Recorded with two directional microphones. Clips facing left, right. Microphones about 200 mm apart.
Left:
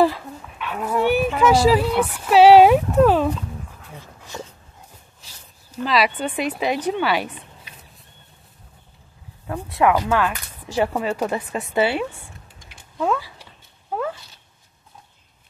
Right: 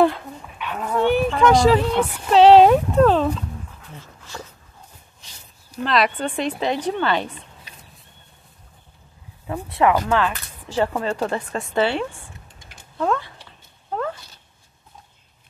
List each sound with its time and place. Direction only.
0.0 s speech: centre (ahead or behind)
4.0 s dog: 15° left (ahead or behind)
5.2 s a sound: 5° left (ahead or behind)
5.9 s speech: 5° left (ahead or behind)
9.5 s speech: 5° right (ahead or behind)
13.9 s a sound: 10° left (ahead or behind)